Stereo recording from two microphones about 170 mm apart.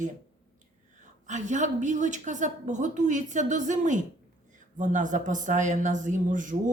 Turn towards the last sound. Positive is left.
turn(degrees=-50)  # may be behind; listen again after turning